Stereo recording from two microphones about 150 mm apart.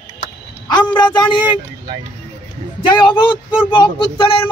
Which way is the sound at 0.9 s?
30° left (ahead or behind).